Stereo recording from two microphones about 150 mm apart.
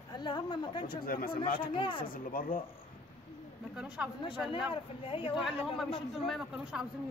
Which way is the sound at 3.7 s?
5° right (ahead or behind).